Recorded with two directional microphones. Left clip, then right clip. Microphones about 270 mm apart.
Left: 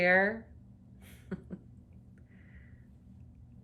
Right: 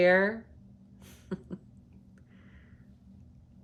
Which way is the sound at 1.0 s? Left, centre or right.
Centre.